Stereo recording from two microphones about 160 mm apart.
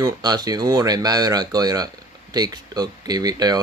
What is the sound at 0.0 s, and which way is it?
Speech, 25° right (ahead or behind).